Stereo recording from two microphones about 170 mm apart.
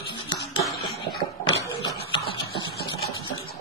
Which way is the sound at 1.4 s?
30° left (ahead or behind).